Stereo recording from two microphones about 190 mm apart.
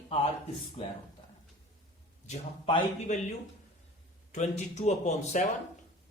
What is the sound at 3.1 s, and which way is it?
Speech, 40° left (ahead or behind).